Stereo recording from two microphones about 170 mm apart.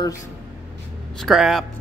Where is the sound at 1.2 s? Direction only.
Centre (ahead or behind).